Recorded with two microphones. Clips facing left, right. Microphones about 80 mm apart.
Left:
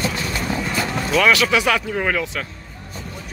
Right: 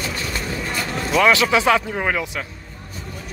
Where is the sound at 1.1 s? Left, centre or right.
Right.